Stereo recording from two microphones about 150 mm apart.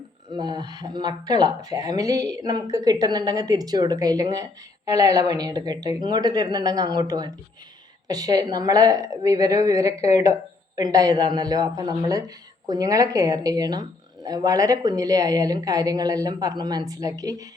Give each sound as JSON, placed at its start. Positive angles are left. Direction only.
{"t": 0.3, "sound": "speech", "side_deg": -30}